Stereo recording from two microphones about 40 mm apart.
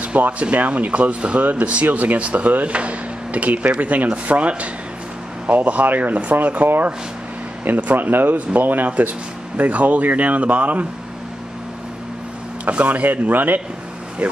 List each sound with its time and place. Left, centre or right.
0.0 s speech: right
5.9 s speech: right
12.6 s speech: right
13.3 s speech: right
14.2 s speech: right